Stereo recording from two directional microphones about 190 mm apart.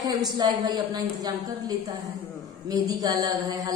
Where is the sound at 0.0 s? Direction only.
20° right (ahead or behind).